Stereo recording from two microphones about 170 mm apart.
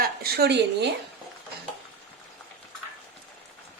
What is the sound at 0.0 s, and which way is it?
Speech, 65° right (ahead or behind).